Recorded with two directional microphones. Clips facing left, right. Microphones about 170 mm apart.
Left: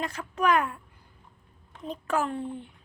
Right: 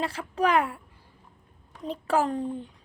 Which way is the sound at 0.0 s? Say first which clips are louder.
Right 1 dB; 30° right (ahead or behind).